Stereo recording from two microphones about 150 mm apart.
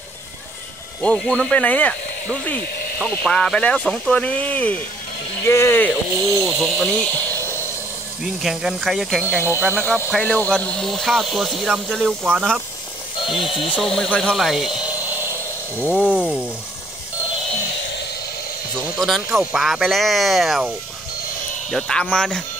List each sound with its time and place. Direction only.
1.0 s speech: 5° left (ahead or behind)
6.4 s speech: centre (ahead or behind)
8.4 s speech: centre (ahead or behind)
9.2 s speech: 15° right (ahead or behind)
10.1 s speech: 5° left (ahead or behind)
13.4 s speech: 35° left (ahead or behind)
13.7 s speech: centre (ahead or behind)
16.1 s speech: 5° right (ahead or behind)
18.8 s speech: centre (ahead or behind)